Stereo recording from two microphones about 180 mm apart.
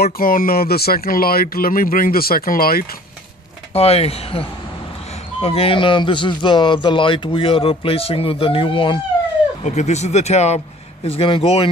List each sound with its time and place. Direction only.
0.0 s speech: 55° left (ahead or behind)
3.7 s speech: 35° left (ahead or behind)